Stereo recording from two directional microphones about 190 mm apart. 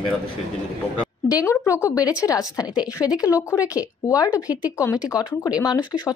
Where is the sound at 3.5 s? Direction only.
20° left (ahead or behind).